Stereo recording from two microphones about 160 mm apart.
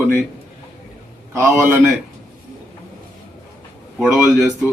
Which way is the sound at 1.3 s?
15° right (ahead or behind).